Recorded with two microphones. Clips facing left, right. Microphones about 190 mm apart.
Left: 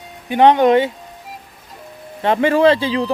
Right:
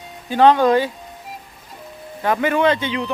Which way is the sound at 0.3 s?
20° left (ahead or behind).